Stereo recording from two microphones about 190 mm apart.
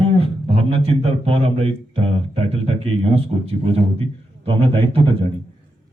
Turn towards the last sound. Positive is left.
turn(degrees=-30)  # may be behind; listen again after turning